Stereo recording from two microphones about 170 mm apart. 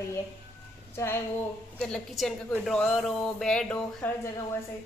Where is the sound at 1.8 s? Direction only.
Centre (ahead or behind).